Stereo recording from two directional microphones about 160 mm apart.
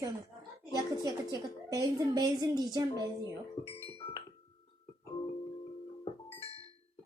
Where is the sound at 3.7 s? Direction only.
35° left (ahead or behind).